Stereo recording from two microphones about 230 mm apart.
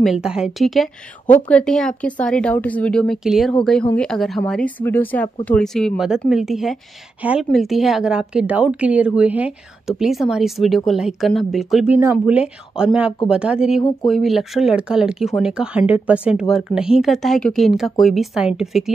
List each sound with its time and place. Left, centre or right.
0.0 s speech: centre